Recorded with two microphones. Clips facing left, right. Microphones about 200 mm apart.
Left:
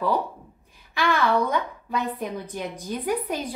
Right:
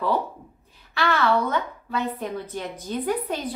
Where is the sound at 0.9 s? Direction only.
15° left (ahead or behind).